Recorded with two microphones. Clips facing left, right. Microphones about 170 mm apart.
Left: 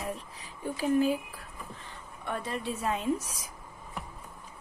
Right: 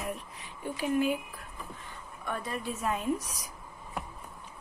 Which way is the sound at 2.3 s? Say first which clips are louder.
Left 1 dB; 30° left (ahead or behind).